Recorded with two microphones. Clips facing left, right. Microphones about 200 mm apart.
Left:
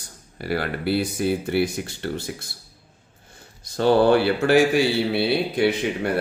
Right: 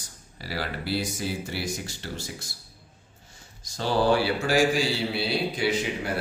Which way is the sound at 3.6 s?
60° left (ahead or behind).